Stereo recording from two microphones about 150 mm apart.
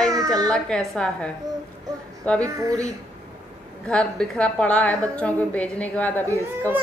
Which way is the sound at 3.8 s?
5° left (ahead or behind).